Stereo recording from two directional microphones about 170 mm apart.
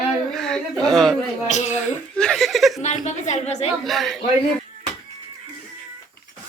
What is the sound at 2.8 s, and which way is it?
Speech, 45° left (ahead or behind).